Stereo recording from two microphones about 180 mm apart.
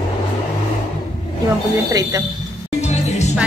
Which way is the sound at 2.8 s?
40° left (ahead or behind).